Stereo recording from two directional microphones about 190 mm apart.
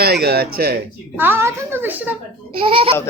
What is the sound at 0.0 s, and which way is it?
Speech, 55° right (ahead or behind).